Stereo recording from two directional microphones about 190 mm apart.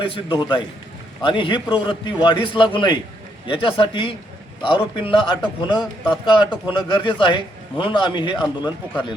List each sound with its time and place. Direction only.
0.1 s a man's voice: 20° left (ahead or behind)